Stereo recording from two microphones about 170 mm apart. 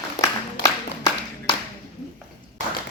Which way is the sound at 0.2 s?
20° left (ahead or behind).